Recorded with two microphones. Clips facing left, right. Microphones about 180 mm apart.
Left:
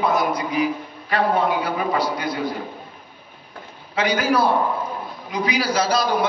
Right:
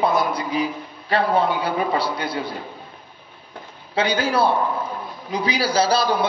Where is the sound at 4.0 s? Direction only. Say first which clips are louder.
Even; 30° right (ahead or behind).